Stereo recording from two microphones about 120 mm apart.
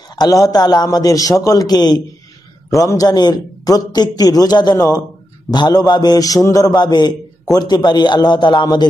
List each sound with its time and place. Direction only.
0.1 s a man's voice: 30° left (ahead or behind)